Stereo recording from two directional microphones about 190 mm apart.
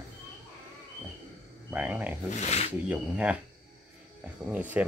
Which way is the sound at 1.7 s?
10° right (ahead or behind).